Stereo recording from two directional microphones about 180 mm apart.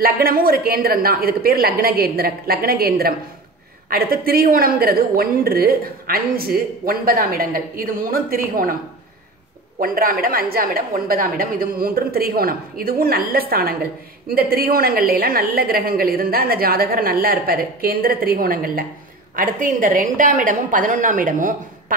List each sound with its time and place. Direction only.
0.0 s a woman's voice: 55° right (ahead or behind)
9.8 s a woman's voice: 50° right (ahead or behind)